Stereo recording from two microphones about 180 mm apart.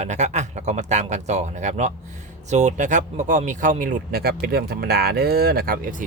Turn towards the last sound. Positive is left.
turn(degrees=-55)  # may be behind; listen again after turning